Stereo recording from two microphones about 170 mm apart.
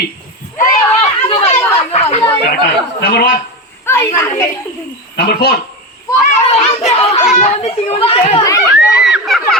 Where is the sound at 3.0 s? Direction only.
70° left (ahead or behind).